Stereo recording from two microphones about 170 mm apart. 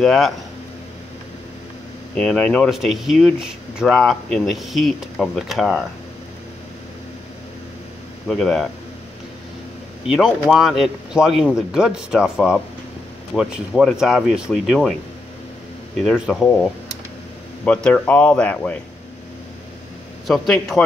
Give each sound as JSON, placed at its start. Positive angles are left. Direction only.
{"t": 0.0, "sound": "speech", "side_deg": 0}
{"t": 2.1, "sound": "speech", "side_deg": 5}
{"t": 8.3, "sound": "speech", "side_deg": 0}
{"t": 10.0, "sound": "speech", "side_deg": -5}
{"t": 16.0, "sound": "speech", "side_deg": 0}
{"t": 17.8, "sound": "speech", "side_deg": 5}
{"t": 20.2, "sound": "a man's voice", "side_deg": 0}